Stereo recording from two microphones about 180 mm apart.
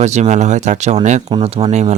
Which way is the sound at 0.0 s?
40° right (ahead or behind).